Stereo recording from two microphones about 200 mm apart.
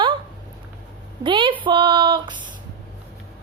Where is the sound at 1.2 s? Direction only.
25° right (ahead or behind).